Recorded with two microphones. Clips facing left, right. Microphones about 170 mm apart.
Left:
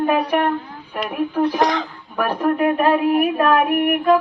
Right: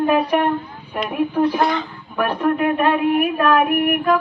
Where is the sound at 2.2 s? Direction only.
35° left (ahead or behind).